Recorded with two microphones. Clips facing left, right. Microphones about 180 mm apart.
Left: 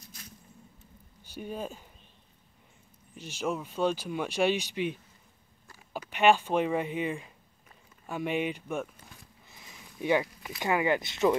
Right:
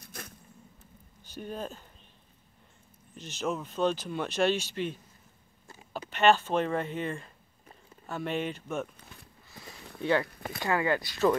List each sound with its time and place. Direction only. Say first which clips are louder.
0.0 s a sound: right 6 dB; 55° right (ahead or behind)
1.2 s speech: left 1 dB; 10° left (ahead or behind)
3.2 s speech: even; 10° left (ahead or behind)
5.9 s speech: even; 10° left (ahead or behind)
9.5 s a sound: right 7 dB; 20° left (ahead or behind)
10.2 s speech: right 4 dB; 55° right (ahead or behind)
10.6 s speech: left 1 dB; 15° left (ahead or behind)